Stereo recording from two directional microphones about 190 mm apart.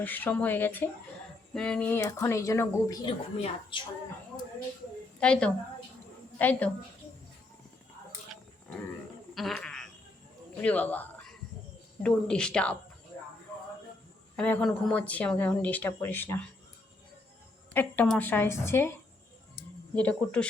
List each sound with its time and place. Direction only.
0.0 s speech: 10° left (ahead or behind)
3.1 s a woman's voice: 25° left (ahead or behind)
5.2 s speech: 5° left (ahead or behind)
9.3 s a sound: centre (ahead or behind)
10.6 s speech: 10° left (ahead or behind)
14.3 s speech: 5° left (ahead or behind)
17.7 s speech: 10° left (ahead or behind)
20.0 s speech: 5° left (ahead or behind)